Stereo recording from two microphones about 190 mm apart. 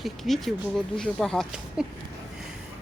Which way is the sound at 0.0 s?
Centre (ahead or behind).